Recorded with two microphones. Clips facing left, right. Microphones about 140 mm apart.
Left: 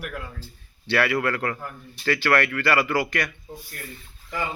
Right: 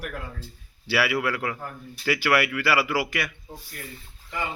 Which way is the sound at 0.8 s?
5° right (ahead or behind).